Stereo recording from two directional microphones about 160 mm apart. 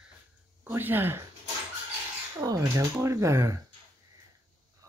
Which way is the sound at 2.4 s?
20° right (ahead or behind).